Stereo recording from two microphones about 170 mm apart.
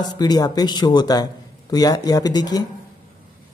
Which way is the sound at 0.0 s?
25° left (ahead or behind).